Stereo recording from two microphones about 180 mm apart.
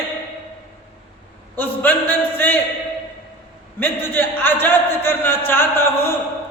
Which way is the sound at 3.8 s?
10° left (ahead or behind).